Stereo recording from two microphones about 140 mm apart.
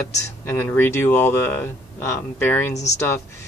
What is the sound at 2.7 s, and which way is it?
Speech, 55° left (ahead or behind).